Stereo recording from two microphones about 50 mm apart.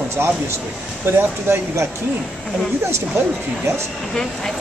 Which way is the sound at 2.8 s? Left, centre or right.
Right.